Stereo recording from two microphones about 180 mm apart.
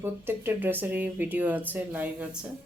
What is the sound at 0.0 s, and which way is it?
Speech, 10° right (ahead or behind).